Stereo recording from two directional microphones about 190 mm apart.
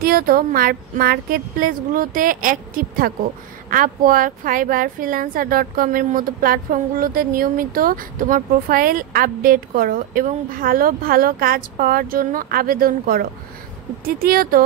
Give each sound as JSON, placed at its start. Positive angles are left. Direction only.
{"t": 0.0, "sound": "speech", "side_deg": -50}